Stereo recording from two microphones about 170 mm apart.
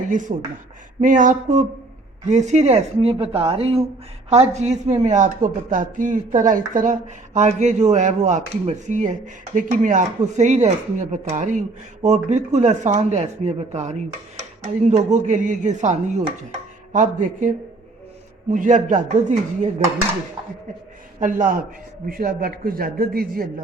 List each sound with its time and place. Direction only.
0.1 s speech: 50° right (ahead or behind)
18.5 s speech: 50° right (ahead or behind)
21.2 s a man's voice: 50° right (ahead or behind)